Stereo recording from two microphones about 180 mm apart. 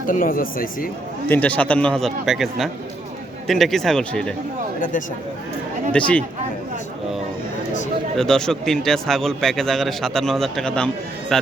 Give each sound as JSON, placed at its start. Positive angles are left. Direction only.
{"t": 0.1, "sound": "speech", "side_deg": 50}
{"t": 1.3, "sound": "speech", "side_deg": 10}
{"t": 4.8, "sound": "speech", "side_deg": 45}
{"t": 5.9, "sound": "speech", "side_deg": 5}
{"t": 8.1, "sound": "speech", "side_deg": 5}